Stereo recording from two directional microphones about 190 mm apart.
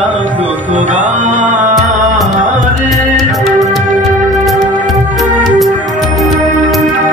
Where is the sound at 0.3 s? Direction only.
10° right (ahead or behind).